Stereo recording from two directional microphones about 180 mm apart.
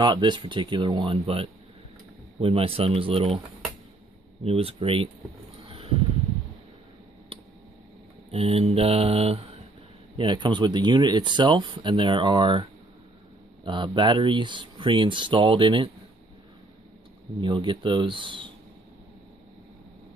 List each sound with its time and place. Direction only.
0.0 s speech: 25° right (ahead or behind)
2.4 s mantra: 30° right (ahead or behind)
4.4 s mantra: 30° right (ahead or behind)
5.6 s a sound: 30° right (ahead or behind)
8.3 s mantra: 35° right (ahead or behind)
10.1 s speech: 25° right (ahead or behind)
13.7 s speech: 25° right (ahead or behind)
17.4 s speech: 25° right (ahead or behind)